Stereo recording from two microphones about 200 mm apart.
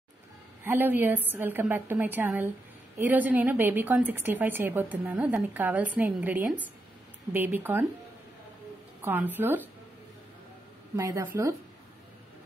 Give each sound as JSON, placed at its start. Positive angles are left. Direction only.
{"t": 0.7, "sound": "a woman's voice", "side_deg": -10}
{"t": 9.0, "sound": "a woman's voice", "side_deg": -10}
{"t": 11.0, "sound": "a woman's voice", "side_deg": -15}